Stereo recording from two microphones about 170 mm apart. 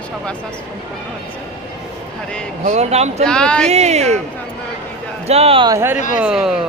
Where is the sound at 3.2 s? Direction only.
5° left (ahead or behind).